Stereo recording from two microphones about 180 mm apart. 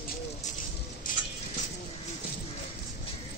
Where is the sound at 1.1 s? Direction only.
50° left (ahead or behind).